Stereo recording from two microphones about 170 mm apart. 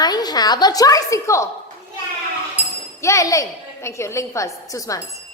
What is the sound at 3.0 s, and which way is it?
A woman's voice, 20° left (ahead or behind).